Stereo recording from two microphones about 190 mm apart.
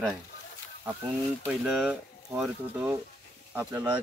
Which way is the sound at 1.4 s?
5° right (ahead or behind).